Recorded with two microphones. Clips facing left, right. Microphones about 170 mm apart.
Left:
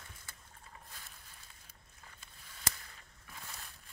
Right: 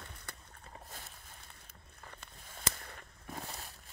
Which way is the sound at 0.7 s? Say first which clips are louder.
Right 6 dB; 45° right (ahead or behind).